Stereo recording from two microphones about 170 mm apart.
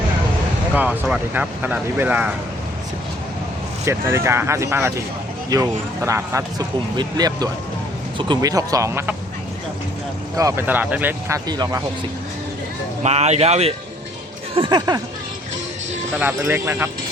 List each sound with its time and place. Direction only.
0.7 s speech: 10° right (ahead or behind)
3.8 s speech: 15° right (ahead or behind)
10.3 s speech: 15° right (ahead or behind)
11.4 s speech: 25° right (ahead or behind)
13.0 s speech: 40° right (ahead or behind); by 15.0 s 25° right (ahead or behind)
16.1 s speech: 10° right (ahead or behind)